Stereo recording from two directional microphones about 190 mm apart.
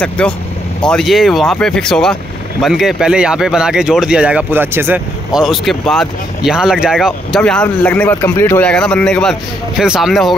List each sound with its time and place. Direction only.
0.2 s speech: 5° left (ahead or behind)